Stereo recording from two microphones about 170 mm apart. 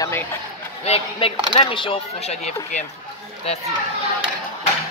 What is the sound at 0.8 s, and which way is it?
Speech, 35° left (ahead or behind).